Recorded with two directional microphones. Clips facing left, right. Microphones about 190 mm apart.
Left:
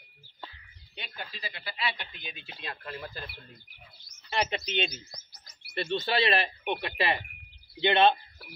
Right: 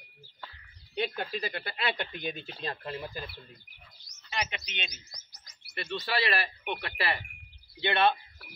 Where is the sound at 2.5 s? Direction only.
30° right (ahead or behind).